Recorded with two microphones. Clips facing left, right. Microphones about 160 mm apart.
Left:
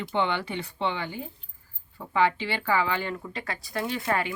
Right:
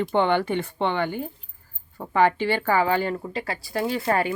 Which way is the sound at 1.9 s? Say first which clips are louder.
Right 4 dB; 45° right (ahead or behind).